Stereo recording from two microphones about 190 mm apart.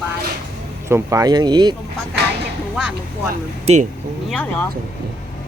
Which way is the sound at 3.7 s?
30° right (ahead or behind).